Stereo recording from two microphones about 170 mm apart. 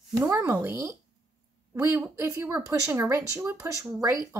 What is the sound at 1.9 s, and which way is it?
Speech, 15° right (ahead or behind).